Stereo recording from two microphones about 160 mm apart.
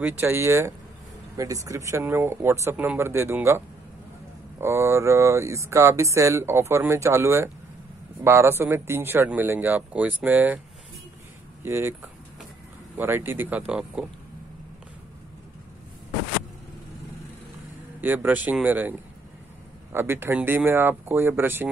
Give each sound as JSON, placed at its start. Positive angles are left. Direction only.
{"t": 0.0, "sound": "speech", "side_deg": -15}
{"t": 11.6, "sound": "speech", "side_deg": -15}
{"t": 12.9, "sound": "speech", "side_deg": -15}
{"t": 18.0, "sound": "speech", "side_deg": -10}